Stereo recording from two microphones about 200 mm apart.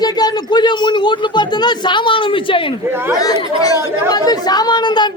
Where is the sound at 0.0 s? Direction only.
20° left (ahead or behind).